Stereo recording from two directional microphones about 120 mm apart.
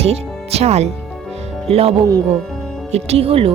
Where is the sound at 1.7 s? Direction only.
55° right (ahead or behind).